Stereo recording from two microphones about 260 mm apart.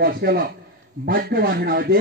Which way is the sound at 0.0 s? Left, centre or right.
Right.